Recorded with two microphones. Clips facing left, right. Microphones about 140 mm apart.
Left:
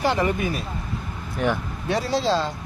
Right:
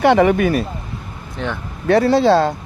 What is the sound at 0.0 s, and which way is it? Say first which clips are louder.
Speech: right 9 dB; 70° right (ahead or behind).